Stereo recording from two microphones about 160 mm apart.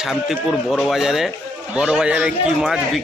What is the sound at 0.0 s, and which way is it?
A man's voice, centre (ahead or behind).